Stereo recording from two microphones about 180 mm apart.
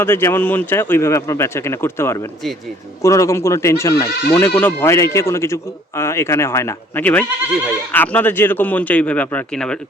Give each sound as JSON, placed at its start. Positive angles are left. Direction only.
{"t": 0.0, "sound": "speech", "side_deg": 15}